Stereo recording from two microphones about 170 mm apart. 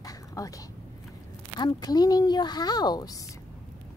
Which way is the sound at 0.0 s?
20° left (ahead or behind).